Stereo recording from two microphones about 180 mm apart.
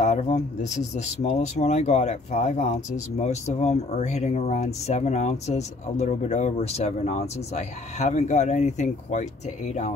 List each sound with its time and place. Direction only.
0.0 s speech: 40° left (ahead or behind)